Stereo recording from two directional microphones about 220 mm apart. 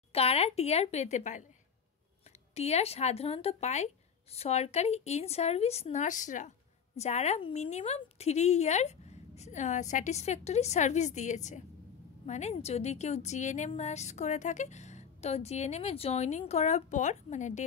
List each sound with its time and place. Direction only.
0.1 s speech: 25° left (ahead or behind)
2.5 s a woman's voice: 30° left (ahead or behind)